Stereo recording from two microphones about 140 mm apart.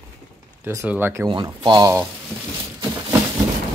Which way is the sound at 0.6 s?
15° right (ahead or behind).